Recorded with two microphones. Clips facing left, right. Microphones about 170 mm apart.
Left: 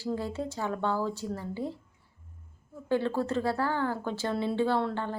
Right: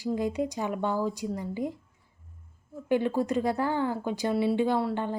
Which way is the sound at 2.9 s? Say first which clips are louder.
Right 2 dB; 15° right (ahead or behind).